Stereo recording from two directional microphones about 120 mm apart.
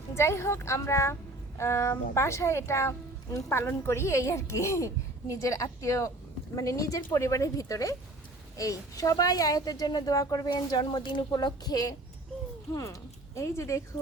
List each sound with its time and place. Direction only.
0.1 s speech: 20° left (ahead or behind)